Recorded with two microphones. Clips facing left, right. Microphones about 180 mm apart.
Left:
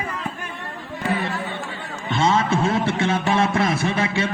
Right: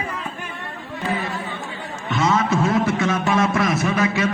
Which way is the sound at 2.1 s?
30° left (ahead or behind).